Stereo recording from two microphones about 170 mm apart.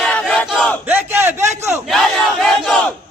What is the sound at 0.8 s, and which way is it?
Battle cry, 10° right (ahead or behind).